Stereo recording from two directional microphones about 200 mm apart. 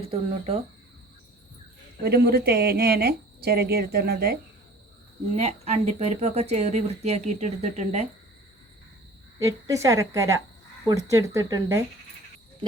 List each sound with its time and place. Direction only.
0.0 s speech: 30° right (ahead or behind)
2.0 s a woman's voice: 55° right (ahead or behind)
5.4 s speech: 35° right (ahead or behind)
9.4 s a woman's voice: 15° right (ahead or behind)